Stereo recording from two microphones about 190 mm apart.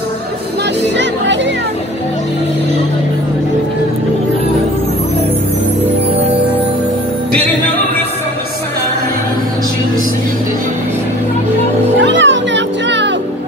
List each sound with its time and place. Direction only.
0.9 s music: 70° right (ahead or behind)
12.0 s music: 70° right (ahead or behind)